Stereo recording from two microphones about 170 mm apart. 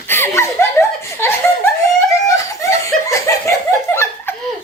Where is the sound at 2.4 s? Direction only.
20° left (ahead or behind).